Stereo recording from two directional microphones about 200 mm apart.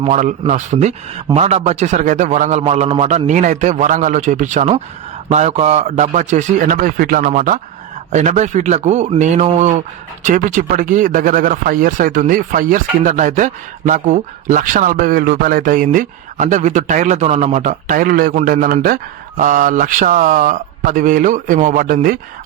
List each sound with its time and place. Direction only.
0.0 s speech: 40° right (ahead or behind)